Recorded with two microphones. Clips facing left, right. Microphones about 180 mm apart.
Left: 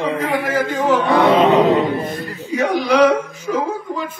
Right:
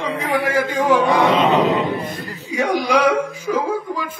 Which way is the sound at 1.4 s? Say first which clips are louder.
Left 3 dB; 30° left (ahead or behind).